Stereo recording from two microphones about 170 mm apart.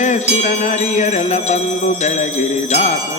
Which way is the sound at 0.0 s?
45° left (ahead or behind).